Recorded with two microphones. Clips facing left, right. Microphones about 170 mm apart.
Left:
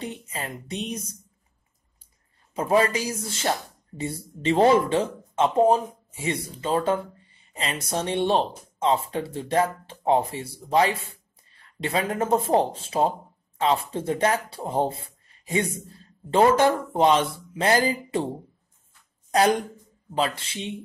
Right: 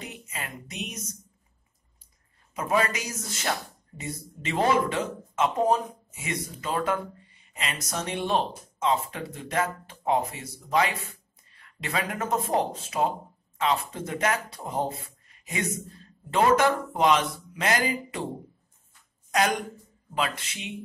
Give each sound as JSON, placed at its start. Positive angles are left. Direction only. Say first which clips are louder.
{"t": 0.0, "sound": "speech", "louder": "left 5 dB", "side_deg": 30}
{"t": 2.5, "sound": "speech", "louder": "left 5 dB", "side_deg": 30}
{"t": 20.2, "sound": "speech", "louder": "left 4 dB", "side_deg": 30}